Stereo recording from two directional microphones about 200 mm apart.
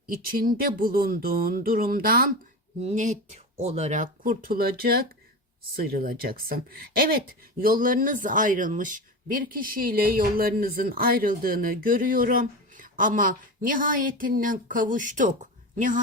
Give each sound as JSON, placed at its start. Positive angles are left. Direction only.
{"t": 0.1, "sound": "speech", "side_deg": -45}